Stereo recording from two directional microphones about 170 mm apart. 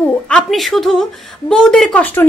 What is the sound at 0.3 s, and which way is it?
A woman's voice, centre (ahead or behind).